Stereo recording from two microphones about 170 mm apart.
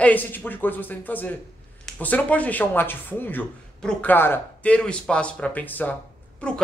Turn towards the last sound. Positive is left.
turn(degrees=5)  # may be behind; listen again after turning